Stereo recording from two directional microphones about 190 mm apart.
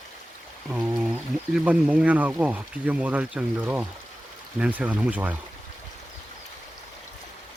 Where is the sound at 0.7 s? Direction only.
10° right (ahead or behind).